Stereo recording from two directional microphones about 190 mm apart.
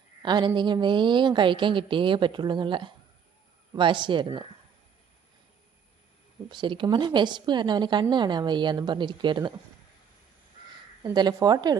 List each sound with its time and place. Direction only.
0.2 s a woman's voice: 25° right (ahead or behind)
6.5 s a woman's voice: 25° right (ahead or behind)
11.0 s a woman's voice: 20° right (ahead or behind)